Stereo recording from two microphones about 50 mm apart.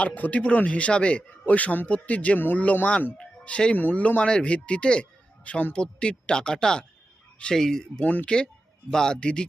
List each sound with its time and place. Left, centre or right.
0.0 s a man's voice: left
3.2 s music: left
3.8 s a man's voice: left; by 8.0 s centre
8.0 s a man's voice: left